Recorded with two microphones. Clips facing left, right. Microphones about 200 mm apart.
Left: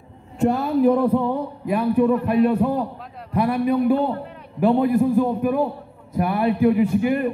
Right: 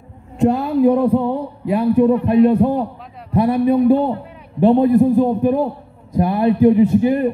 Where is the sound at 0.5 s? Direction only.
15° right (ahead or behind).